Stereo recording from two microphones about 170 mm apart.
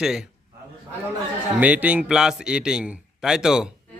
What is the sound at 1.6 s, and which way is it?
A man's voice, 10° right (ahead or behind).